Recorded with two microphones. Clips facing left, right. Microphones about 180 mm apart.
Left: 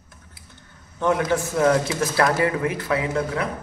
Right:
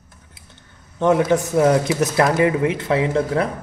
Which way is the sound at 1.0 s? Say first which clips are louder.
Right 5 dB; 20° right (ahead or behind).